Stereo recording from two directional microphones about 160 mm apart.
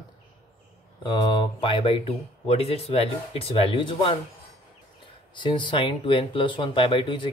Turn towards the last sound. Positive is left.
turn(degrees=30)  # may be behind; listen again after turning